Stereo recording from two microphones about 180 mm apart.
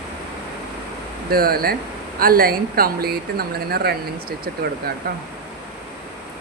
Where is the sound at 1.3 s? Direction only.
55° right (ahead or behind).